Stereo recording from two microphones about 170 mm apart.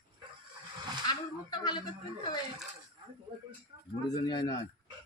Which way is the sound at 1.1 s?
25° left (ahead or behind).